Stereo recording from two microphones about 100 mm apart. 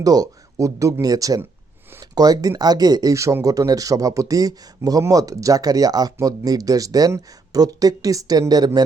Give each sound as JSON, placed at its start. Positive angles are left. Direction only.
{"t": 0.0, "sound": "speech", "side_deg": -40}